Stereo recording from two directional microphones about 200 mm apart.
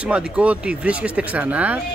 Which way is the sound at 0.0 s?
5° right (ahead or behind).